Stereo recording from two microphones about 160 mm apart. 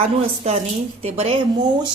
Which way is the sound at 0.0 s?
40° right (ahead or behind).